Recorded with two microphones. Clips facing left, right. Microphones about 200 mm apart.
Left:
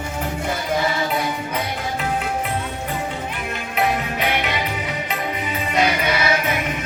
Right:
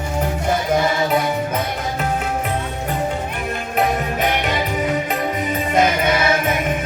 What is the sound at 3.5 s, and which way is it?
Music, 45° right (ahead or behind).